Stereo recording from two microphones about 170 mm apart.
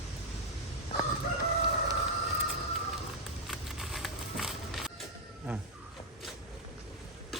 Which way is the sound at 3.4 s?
Centre (ahead or behind).